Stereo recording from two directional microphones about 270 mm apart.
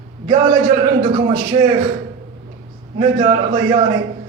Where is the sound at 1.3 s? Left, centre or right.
Centre.